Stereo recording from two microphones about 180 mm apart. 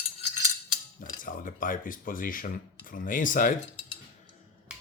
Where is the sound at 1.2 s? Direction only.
50° left (ahead or behind).